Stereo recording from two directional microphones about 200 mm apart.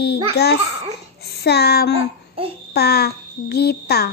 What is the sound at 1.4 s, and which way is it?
Child singing, 55° left (ahead or behind).